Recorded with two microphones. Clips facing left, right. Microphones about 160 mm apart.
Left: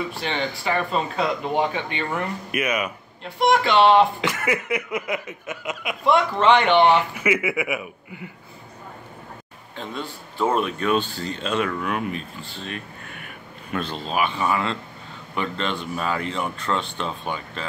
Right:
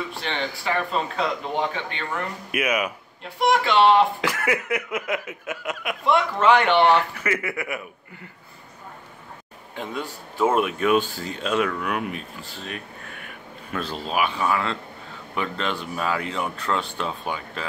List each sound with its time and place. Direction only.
0.1 s speech: 5° left (ahead or behind)
1.9 s a man's voice: 15° left (ahead or behind)
2.5 s speech: 5° right (ahead or behind)
6.6 s a man's voice: 15° left (ahead or behind)
10.4 s speech: 5° right (ahead or behind)